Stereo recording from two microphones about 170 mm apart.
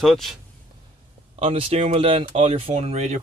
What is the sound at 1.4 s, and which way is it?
Speech, 35° right (ahead or behind).